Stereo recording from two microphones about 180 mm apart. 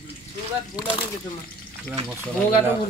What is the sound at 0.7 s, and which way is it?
Speech, 25° left (ahead or behind).